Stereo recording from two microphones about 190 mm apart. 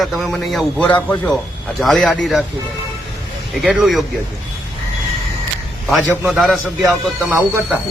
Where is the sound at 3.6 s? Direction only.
Centre (ahead or behind).